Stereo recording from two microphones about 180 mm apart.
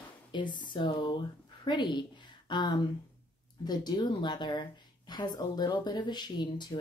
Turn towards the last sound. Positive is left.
turn(degrees=25)  # may be behind; listen again after turning